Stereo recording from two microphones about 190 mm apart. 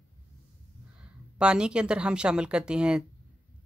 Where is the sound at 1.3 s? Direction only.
5° right (ahead or behind).